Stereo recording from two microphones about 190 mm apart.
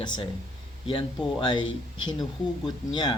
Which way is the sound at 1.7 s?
90° left.